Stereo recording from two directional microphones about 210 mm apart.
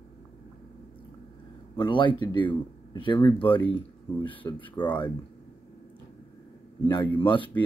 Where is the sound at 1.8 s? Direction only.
20° left (ahead or behind).